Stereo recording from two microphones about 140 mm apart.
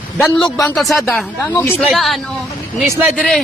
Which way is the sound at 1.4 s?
15° left (ahead or behind).